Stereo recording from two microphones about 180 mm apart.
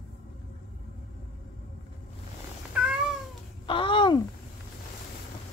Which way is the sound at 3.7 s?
30° left (ahead or behind).